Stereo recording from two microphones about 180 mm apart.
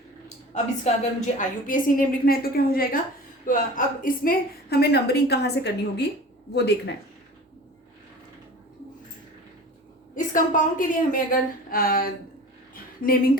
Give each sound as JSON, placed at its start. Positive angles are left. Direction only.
{"t": 1.2, "sound": "a woman's voice", "side_deg": 45}
{"t": 10.2, "sound": "a woman's voice", "side_deg": 45}
{"t": 12.7, "sound": "a sound", "side_deg": 55}